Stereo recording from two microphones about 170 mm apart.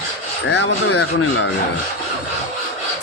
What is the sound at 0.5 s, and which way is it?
Speech, 90° left.